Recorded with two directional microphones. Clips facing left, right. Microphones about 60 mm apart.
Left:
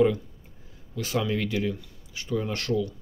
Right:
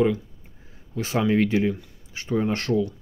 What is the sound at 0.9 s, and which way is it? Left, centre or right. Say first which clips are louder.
Speech: right 6 dB; right.